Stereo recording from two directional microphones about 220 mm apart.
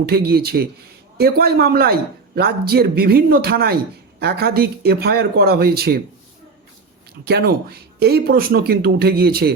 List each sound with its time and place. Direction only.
0.0 s a man's voice: 45° right (ahead or behind)
7.3 s a man's voice: 45° right (ahead or behind)